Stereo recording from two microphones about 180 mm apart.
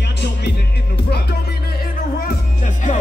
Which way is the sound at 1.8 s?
45° left (ahead or behind).